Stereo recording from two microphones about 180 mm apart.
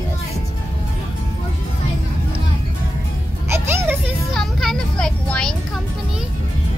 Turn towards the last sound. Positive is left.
turn(degrees=5)  # may be behind; listen again after turning